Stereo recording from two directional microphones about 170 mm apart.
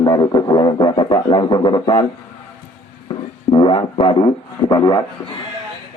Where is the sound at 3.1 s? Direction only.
30° left (ahead or behind).